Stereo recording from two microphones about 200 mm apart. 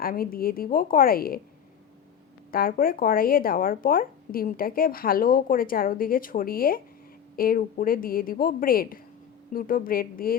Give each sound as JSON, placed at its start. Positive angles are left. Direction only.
{"t": 0.0, "sound": "speech", "side_deg": 45}
{"t": 2.5, "sound": "speech", "side_deg": 45}